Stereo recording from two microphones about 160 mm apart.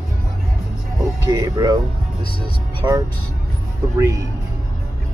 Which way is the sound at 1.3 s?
25° right (ahead or behind).